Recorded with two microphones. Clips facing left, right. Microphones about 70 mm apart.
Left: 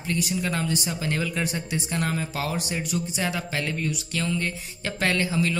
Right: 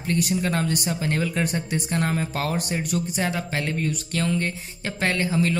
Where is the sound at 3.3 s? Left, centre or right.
Right.